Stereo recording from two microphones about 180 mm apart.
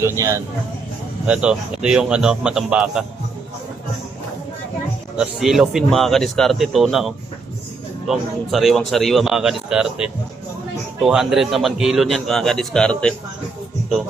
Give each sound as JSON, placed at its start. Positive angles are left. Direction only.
{"t": 0.0, "sound": "a man's voice", "side_deg": -15}
{"t": 5.1, "sound": "a man's voice", "side_deg": -5}